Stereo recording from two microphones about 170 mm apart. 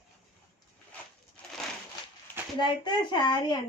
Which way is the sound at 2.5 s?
25° left (ahead or behind).